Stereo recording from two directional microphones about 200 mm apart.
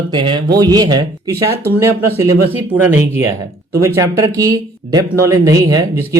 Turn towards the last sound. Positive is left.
turn(degrees=-15)  # may be behind; listen again after turning